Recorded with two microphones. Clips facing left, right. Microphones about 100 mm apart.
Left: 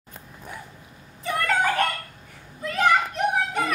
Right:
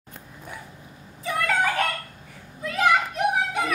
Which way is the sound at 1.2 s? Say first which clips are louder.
Left 1 dB; centre (ahead or behind).